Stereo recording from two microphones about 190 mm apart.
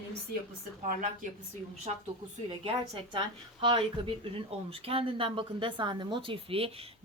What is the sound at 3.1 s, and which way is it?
A woman's voice, 25° right (ahead or behind).